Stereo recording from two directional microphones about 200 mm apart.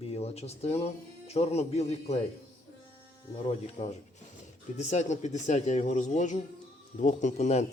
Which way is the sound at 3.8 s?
35° left (ahead or behind).